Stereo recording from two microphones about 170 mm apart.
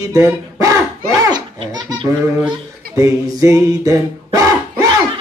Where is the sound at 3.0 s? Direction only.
20° right (ahead or behind).